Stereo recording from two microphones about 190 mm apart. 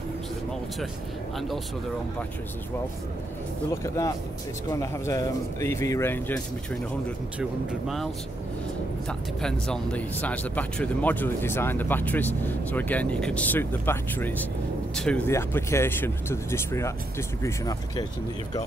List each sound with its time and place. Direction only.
3.8 s speech: 15° left (ahead or behind)
9.4 s speech: 5° left (ahead or behind)